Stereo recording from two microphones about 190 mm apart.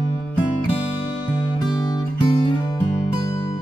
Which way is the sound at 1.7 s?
20° left (ahead or behind).